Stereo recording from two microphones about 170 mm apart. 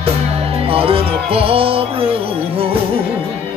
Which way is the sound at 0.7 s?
35° right (ahead or behind).